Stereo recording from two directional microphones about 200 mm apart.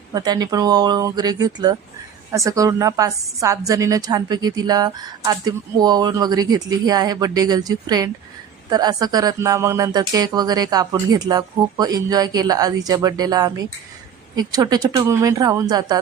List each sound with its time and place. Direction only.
0.1 s a woman's voice: 20° right (ahead or behind)